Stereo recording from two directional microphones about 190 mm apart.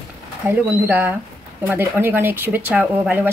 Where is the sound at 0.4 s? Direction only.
10° right (ahead or behind).